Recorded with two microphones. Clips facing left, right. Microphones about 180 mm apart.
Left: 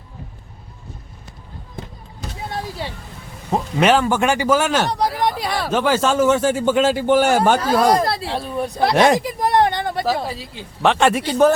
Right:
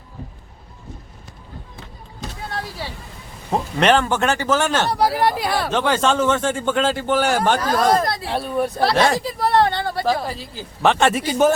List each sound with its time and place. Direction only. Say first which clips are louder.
3.5 s speech: left 1 dB; 5° left (ahead or behind)
4.9 s speech: right 2 dB; 5° right (ahead or behind); by 8.0 s 10° left (ahead or behind)
8.0 s speech: left 2 dB; 30° left (ahead or behind)
8.3 s speech: right 2 dB; centre (ahead or behind)
8.8 s a sound: left 5 dB; 20° left (ahead or behind)
10.2 s speech: even; centre (ahead or behind)